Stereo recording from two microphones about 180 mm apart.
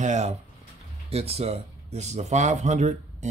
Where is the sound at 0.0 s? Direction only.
40° right (ahead or behind).